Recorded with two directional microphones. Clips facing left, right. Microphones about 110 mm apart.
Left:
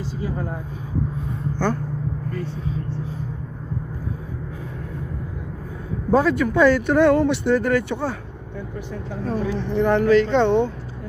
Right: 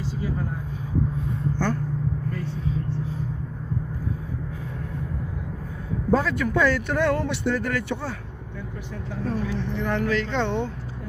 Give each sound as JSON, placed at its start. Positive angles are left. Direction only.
{"t": 6.1, "sound": "speech", "side_deg": 20}
{"t": 9.3, "sound": "speech", "side_deg": 30}